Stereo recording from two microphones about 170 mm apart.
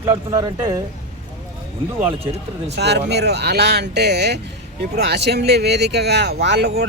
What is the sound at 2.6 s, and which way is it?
Speech, 85° right.